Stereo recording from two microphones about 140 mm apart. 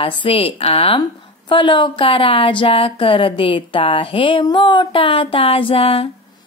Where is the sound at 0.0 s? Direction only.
40° left (ahead or behind).